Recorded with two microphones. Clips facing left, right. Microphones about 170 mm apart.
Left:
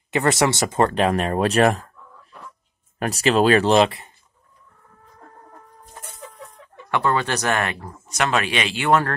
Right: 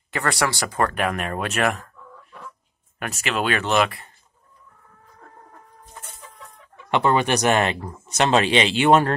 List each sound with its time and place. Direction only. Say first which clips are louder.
0.1 s speech: left 5 dB; 20° left (ahead or behind)
3.0 s speech: left 8 dB; 35° left (ahead or behind)
6.9 s speech: right 2 dB; 20° right (ahead or behind)